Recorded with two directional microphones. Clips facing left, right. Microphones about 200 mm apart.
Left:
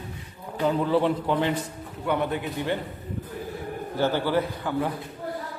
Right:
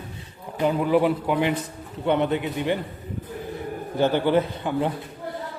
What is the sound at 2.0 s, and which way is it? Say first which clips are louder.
Speech: right 4 dB; 25° right (ahead or behind).